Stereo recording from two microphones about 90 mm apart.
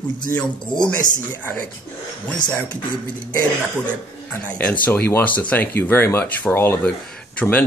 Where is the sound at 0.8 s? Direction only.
15° left (ahead or behind).